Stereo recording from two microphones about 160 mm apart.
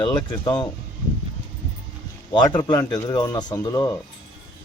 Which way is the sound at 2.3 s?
30° left (ahead or behind).